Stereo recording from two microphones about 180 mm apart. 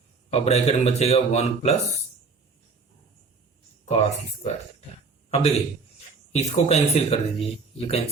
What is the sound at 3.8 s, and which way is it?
Speech, 35° left (ahead or behind).